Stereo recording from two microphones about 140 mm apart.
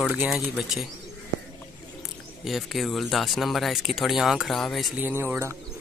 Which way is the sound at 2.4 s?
Centre (ahead or behind).